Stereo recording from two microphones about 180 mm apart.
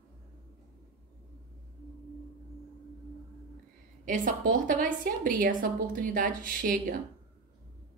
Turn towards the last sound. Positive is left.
turn(degrees=-50)  # may be behind; listen again after turning